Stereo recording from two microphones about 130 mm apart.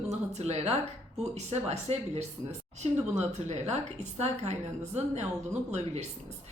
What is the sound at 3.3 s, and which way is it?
A woman's voice, 60° right (ahead or behind).